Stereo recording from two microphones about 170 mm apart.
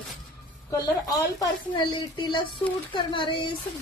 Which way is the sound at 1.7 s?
25° left (ahead or behind).